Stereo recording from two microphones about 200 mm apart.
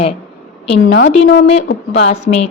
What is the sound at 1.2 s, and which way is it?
Speech, 65° left (ahead or behind).